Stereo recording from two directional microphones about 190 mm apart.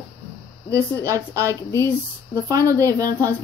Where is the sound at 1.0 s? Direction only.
15° right (ahead or behind).